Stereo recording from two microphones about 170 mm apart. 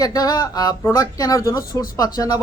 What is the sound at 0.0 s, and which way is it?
A man's voice, 20° left (ahead or behind).